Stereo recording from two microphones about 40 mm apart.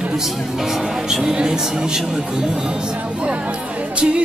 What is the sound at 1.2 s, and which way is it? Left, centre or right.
Speech, centre.